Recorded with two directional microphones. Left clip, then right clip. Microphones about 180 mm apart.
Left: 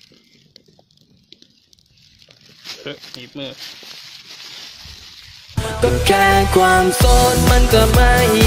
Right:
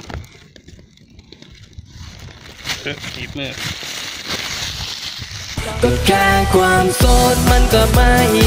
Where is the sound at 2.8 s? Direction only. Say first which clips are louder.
Right 6 dB; 30° left (ahead or behind).